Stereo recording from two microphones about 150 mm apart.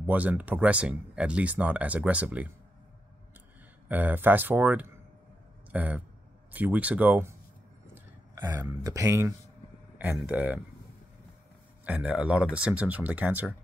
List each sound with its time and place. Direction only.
0.0 s speech: 10° right (ahead or behind)
3.9 s speech: 10° right (ahead or behind)
11.8 s speech: 10° right (ahead or behind)